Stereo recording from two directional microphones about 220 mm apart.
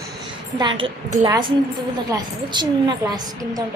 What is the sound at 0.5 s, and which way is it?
A woman's voice, 20° right (ahead or behind).